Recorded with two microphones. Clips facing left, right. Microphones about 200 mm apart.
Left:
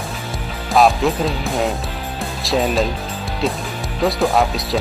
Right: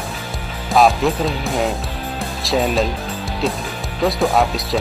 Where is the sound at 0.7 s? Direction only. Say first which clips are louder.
Even; centre (ahead or behind).